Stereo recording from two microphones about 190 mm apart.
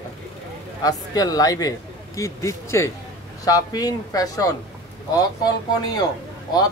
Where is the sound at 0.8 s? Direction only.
20° left (ahead or behind).